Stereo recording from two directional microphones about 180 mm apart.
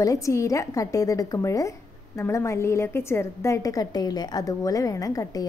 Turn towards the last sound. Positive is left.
turn(degrees=20)  # may be behind; listen again after turning